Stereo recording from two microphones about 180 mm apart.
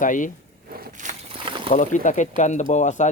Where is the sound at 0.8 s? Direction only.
40° right (ahead or behind).